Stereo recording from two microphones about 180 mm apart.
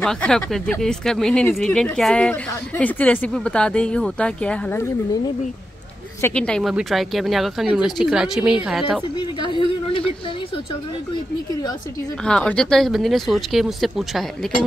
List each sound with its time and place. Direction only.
0.0 s speech: 5° left (ahead or behind)
6.2 s speech: 5° left (ahead or behind)
9.2 s speech: 25° left (ahead or behind)
12.3 s speech: 5° left (ahead or behind)